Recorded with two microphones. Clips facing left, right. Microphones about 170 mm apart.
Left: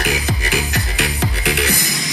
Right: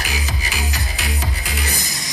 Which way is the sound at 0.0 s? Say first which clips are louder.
Left 6 dB; 60° left (ahead or behind).